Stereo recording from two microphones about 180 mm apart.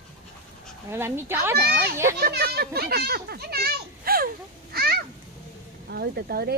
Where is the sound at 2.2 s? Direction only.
60° right (ahead or behind).